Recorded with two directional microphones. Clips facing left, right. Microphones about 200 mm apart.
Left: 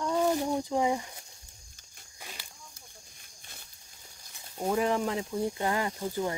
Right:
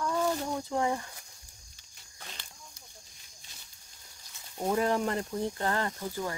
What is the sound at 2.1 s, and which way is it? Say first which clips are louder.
Snake: left 1 dB; 10° left (ahead or behind).